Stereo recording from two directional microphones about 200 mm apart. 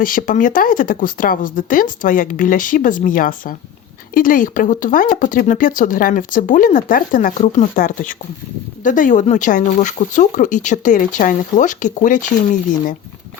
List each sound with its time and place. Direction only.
0.0 s speech: 45° left (ahead or behind)